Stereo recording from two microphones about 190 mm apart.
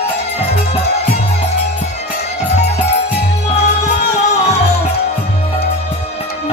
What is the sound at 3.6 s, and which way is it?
Music, 35° left (ahead or behind).